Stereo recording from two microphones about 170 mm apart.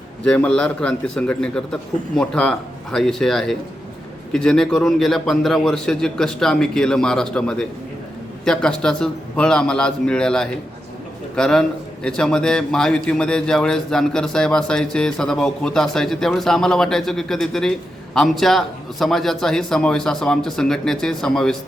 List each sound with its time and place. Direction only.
0.3 s speech: 5° left (ahead or behind)